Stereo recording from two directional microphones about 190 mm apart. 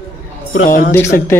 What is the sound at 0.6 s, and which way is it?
Speech, 45° left (ahead or behind).